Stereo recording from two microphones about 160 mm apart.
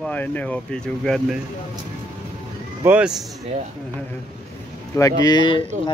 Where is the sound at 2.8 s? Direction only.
10° right (ahead or behind).